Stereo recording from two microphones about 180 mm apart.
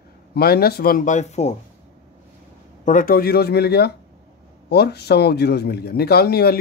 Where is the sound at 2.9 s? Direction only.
50° left (ahead or behind).